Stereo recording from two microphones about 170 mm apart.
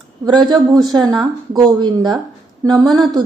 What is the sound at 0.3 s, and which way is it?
A woman's voice, 25° right (ahead or behind).